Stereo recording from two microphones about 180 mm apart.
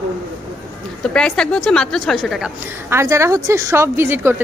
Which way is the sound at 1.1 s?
5° left (ahead or behind).